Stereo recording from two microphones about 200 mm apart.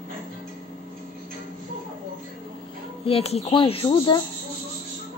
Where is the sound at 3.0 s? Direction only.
30° left (ahead or behind).